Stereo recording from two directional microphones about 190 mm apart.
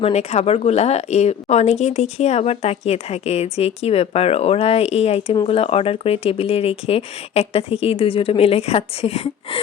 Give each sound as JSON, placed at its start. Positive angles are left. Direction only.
{"t": 0.0, "sound": "speech", "side_deg": 35}